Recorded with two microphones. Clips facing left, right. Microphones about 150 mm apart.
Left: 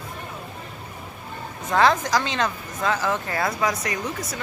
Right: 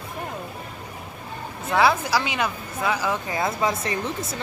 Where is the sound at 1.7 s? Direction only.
10° right (ahead or behind).